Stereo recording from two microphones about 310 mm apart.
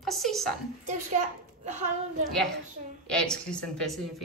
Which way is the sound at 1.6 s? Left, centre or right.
Right.